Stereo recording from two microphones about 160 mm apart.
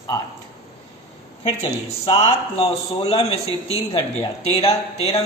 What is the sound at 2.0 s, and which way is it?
Speech, 40° left (ahead or behind).